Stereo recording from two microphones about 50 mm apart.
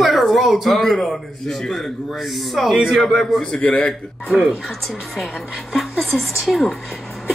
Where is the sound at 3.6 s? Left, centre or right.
Left.